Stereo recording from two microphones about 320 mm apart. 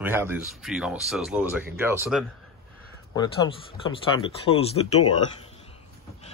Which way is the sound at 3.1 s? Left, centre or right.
Centre.